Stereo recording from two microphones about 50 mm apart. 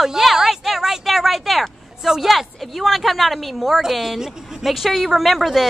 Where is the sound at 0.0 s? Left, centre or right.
Centre.